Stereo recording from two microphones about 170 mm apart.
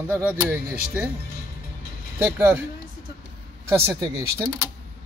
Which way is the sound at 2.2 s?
15° right (ahead or behind).